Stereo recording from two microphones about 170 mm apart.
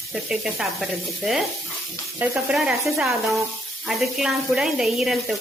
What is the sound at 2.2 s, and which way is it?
Speech, 5° right (ahead or behind).